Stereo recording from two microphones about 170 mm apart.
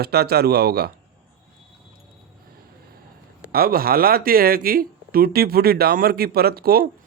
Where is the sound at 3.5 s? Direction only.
60° right (ahead or behind).